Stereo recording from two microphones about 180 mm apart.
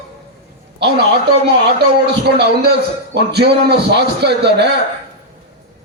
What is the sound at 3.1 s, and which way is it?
A man's voice, 65° right (ahead or behind).